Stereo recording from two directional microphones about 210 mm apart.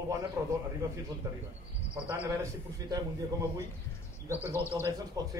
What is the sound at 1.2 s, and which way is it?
Speech, 15° right (ahead or behind).